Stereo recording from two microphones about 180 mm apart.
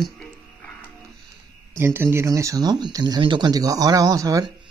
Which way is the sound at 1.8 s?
15° right (ahead or behind).